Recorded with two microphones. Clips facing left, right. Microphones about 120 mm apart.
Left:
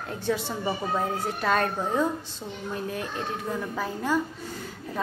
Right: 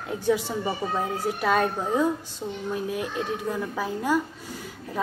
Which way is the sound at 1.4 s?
10° right (ahead or behind).